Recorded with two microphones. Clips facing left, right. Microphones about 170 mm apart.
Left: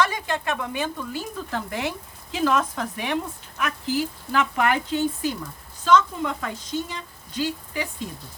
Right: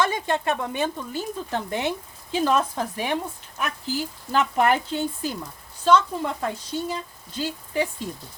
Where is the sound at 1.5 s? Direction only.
25° right (ahead or behind).